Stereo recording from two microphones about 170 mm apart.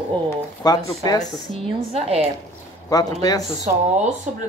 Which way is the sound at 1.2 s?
45° left (ahead or behind).